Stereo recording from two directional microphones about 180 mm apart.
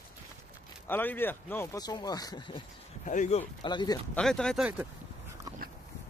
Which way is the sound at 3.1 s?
40° left (ahead or behind).